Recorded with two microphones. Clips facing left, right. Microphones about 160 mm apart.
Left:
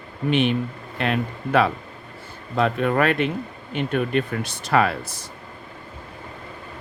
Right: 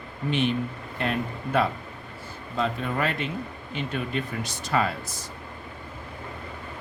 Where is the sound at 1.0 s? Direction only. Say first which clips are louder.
Left 4 dB; 75° left (ahead or behind).